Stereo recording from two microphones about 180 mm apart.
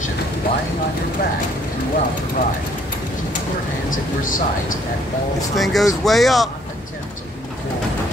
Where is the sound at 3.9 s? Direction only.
50° left (ahead or behind).